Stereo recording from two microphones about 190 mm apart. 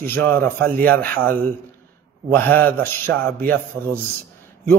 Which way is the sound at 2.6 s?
10° left (ahead or behind).